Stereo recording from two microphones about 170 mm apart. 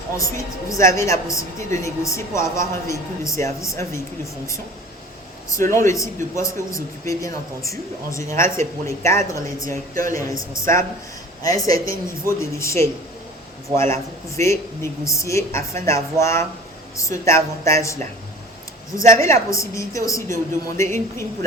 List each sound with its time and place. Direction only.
0.2 s a woman's voice: 20° left (ahead or behind)
5.5 s a woman's voice: 15° left (ahead or behind)
11.4 s a woman's voice: 20° left (ahead or behind)
18.9 s a woman's voice: 20° left (ahead or behind)